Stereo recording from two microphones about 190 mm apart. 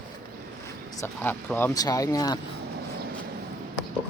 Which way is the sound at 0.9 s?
15° left (ahead or behind).